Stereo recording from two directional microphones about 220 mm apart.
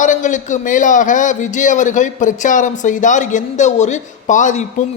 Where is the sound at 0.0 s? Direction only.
35° left (ahead or behind).